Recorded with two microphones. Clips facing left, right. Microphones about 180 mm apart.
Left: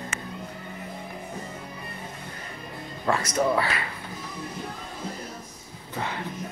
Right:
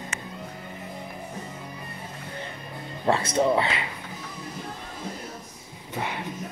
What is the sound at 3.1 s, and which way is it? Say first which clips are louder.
Speech: right 2 dB; 30° right (ahead or behind).